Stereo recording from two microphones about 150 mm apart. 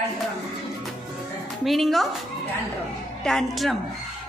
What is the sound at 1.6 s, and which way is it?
Speech, centre (ahead or behind).